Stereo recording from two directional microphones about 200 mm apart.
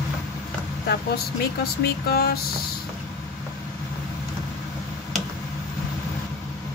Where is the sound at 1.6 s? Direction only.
50° left (ahead or behind).